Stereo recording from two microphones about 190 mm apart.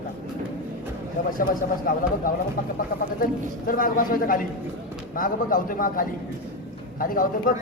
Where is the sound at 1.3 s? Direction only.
45° left (ahead or behind).